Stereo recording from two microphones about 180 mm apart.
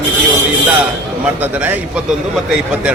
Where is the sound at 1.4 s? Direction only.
10° right (ahead or behind).